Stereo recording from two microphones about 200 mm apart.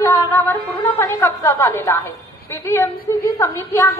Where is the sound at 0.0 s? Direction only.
15° left (ahead or behind).